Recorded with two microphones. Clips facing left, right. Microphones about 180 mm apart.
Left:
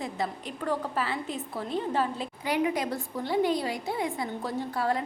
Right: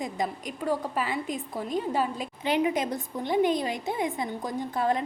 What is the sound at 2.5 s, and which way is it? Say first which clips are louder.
A woman's voice: right 2 dB; 25° right (ahead or behind).